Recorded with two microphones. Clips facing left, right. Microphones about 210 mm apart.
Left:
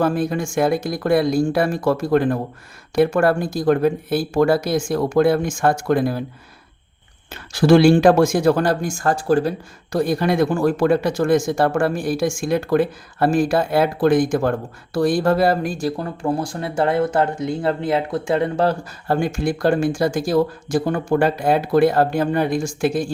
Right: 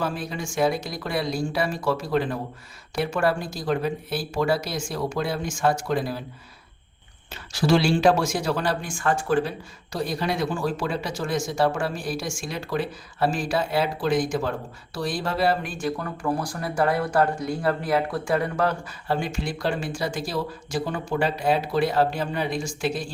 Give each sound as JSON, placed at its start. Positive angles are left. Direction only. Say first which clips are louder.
{"t": 0.0, "sound": "speech", "louder": "left 9 dB", "side_deg": 50}
{"t": 7.3, "sound": "speech", "louder": "left 8 dB", "side_deg": 55}
{"t": 19.0, "sound": "speech", "louder": "left 7 dB", "side_deg": 50}